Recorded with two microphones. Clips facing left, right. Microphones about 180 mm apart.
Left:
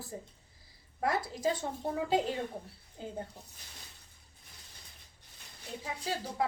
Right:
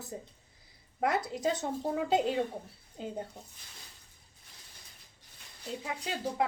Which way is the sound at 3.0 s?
20° right (ahead or behind).